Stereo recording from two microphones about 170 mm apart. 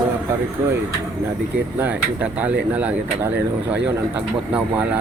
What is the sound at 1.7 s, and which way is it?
Speech, 10° right (ahead or behind).